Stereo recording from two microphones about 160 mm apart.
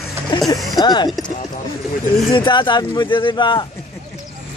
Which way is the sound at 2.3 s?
30° left (ahead or behind).